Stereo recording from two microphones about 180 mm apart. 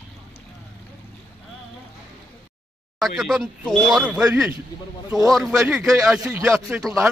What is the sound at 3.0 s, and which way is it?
Speech, centre (ahead or behind).